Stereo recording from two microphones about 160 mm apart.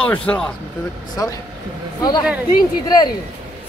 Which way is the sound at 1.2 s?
20° left (ahead or behind).